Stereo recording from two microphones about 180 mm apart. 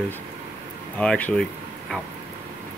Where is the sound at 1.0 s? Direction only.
5° left (ahead or behind).